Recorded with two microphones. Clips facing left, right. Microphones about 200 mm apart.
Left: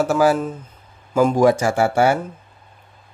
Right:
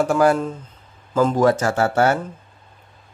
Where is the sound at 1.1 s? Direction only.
10° left (ahead or behind).